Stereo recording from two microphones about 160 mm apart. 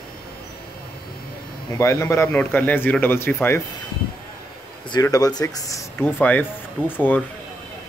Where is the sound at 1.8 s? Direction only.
20° left (ahead or behind).